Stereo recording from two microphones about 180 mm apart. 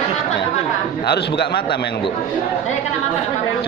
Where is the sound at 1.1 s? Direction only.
65° left (ahead or behind).